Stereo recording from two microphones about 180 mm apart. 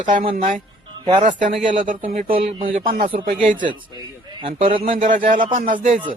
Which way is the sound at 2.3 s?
30° right (ahead or behind).